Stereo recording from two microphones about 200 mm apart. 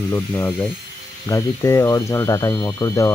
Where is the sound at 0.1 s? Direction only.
15° left (ahead or behind).